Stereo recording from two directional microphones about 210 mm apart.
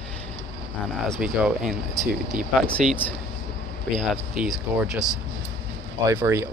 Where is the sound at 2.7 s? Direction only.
5° left (ahead or behind).